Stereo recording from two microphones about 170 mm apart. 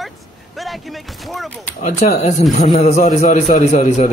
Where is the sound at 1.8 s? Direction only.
45° left (ahead or behind).